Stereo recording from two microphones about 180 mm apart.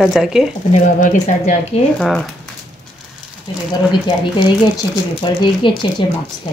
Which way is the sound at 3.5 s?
25° left (ahead or behind).